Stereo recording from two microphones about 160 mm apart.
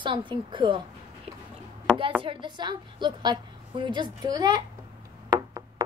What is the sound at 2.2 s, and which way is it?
A woman's voice, 30° right (ahead or behind).